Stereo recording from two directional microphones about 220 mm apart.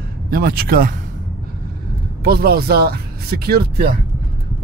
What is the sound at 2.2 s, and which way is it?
Speech, 45° right (ahead or behind).